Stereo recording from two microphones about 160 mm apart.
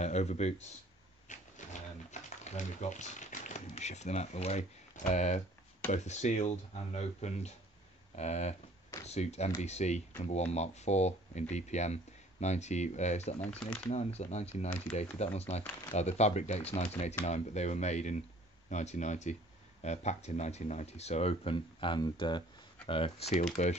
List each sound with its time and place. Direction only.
0.0 s speech: 45° left (ahead or behind)
1.3 s a sound: 50° left (ahead or behind)
5.9 s speech: 45° left (ahead or behind)
13.4 s speech: 10° left (ahead or behind)
13.8 s speech: 40° left (ahead or behind)